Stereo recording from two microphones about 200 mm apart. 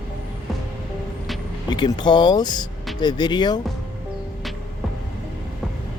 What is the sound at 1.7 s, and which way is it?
Speech, 20° left (ahead or behind).